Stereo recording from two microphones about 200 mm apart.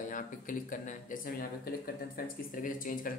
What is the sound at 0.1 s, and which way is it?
Speech, 40° left (ahead or behind).